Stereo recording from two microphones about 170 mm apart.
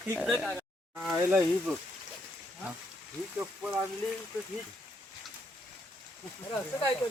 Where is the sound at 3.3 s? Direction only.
5° right (ahead or behind).